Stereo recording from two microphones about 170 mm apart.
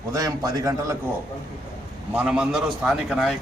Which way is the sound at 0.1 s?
20° right (ahead or behind).